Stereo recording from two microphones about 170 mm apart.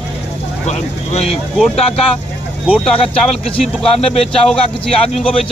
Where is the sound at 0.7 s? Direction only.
40° left (ahead or behind).